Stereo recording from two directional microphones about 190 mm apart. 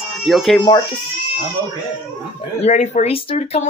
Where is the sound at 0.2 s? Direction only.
Centre (ahead or behind).